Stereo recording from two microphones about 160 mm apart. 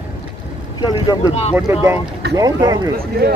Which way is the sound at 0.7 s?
25° left (ahead or behind).